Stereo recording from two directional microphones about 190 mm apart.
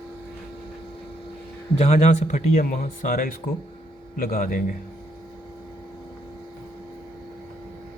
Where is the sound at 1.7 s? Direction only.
35° left (ahead or behind).